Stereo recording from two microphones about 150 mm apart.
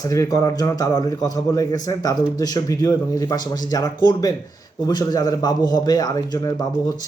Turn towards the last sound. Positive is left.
turn(degrees=25)  # may be behind; listen again after turning